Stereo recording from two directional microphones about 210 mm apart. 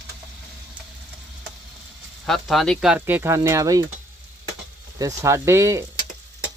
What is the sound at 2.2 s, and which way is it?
Speech, centre (ahead or behind).